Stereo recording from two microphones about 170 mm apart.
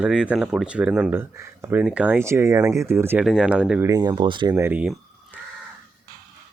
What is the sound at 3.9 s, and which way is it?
Speech, 25° right (ahead or behind).